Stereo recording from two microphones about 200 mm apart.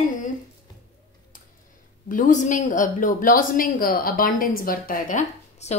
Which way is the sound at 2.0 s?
40° left (ahead or behind).